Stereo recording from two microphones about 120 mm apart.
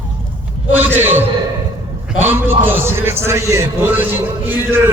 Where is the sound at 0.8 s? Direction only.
15° right (ahead or behind).